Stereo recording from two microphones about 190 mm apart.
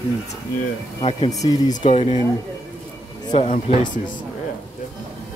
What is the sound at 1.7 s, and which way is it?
Speech, 35° left (ahead or behind).